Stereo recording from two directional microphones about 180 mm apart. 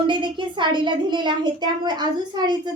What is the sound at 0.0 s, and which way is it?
A child's voice, 25° right (ahead or behind).